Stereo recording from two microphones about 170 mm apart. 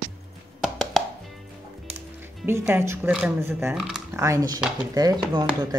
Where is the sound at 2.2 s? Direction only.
10° right (ahead or behind).